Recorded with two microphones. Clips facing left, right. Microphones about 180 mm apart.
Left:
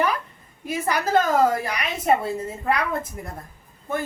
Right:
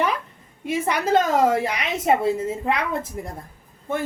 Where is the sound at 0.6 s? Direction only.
25° right (ahead or behind).